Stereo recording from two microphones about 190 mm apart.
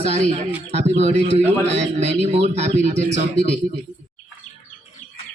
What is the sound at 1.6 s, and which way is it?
Speech, 65° right (ahead or behind).